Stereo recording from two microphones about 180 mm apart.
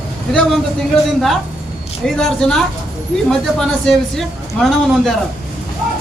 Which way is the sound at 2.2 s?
5° left (ahead or behind).